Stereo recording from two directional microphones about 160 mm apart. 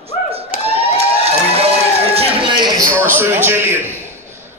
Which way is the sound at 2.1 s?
30° right (ahead or behind).